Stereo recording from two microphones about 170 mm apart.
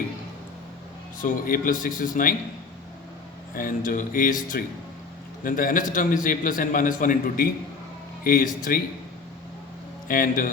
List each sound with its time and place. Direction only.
1.2 s a man's voice: 55° left (ahead or behind)
3.5 s a man's voice: 55° left (ahead or behind)
10.1 s a man's voice: 55° left (ahead or behind)